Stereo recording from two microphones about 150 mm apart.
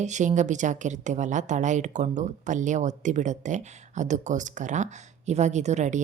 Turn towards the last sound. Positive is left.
turn(degrees=-50)  # may be behind; listen again after turning